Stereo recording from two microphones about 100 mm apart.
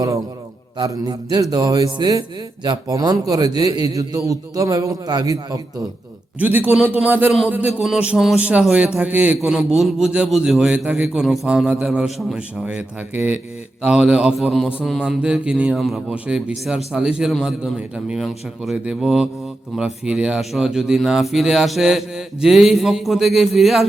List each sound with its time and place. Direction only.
0.8 s a man's voice: 40° right (ahead or behind)
6.4 s a man's voice: 20° right (ahead or behind)
9.4 s a man's voice: 5° right (ahead or behind)
16.1 s a man's voice: 15° right (ahead or behind)